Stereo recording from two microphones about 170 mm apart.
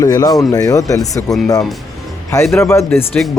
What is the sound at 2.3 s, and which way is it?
Speech, 15° left (ahead or behind).